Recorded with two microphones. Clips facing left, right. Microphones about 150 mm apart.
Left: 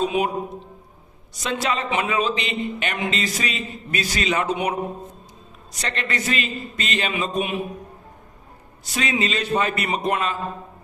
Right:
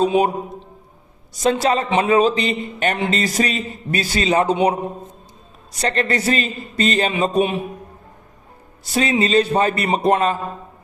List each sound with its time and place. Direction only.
0.0 s a man's voice: 35° right (ahead or behind)
1.4 s a man's voice: 35° right (ahead or behind)
8.8 s a man's voice: 35° right (ahead or behind)